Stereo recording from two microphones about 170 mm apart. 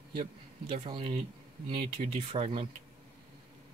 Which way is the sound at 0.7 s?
35° right (ahead or behind).